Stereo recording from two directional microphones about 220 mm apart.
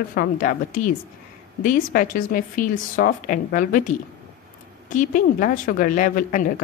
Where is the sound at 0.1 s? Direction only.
40° left (ahead or behind).